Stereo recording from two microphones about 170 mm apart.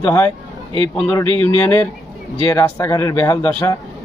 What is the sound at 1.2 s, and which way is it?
Speech, 30° right (ahead or behind).